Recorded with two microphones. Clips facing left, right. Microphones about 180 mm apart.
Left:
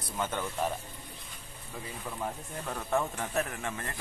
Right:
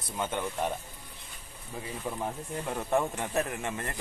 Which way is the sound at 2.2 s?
15° right (ahead or behind).